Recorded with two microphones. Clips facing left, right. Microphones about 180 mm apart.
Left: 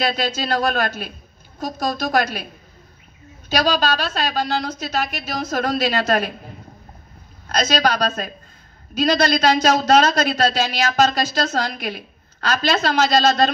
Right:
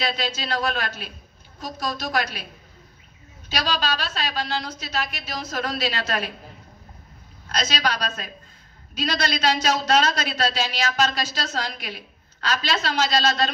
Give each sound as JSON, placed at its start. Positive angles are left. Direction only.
{"t": 0.0, "sound": "speech", "side_deg": 45}
{"t": 3.4, "sound": "speech", "side_deg": 45}
{"t": 7.4, "sound": "speech", "side_deg": 45}